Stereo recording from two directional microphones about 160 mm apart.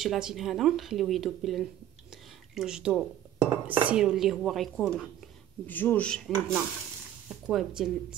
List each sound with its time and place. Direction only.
0.0 s speech: 5° right (ahead or behind)